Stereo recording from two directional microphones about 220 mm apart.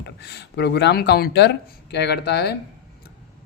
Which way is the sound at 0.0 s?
50° left (ahead or behind).